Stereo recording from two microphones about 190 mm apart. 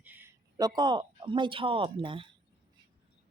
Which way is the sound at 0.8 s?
25° right (ahead or behind).